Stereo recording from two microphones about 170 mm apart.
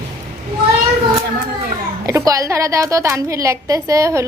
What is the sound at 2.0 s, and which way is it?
A woman's voice, 20° right (ahead or behind).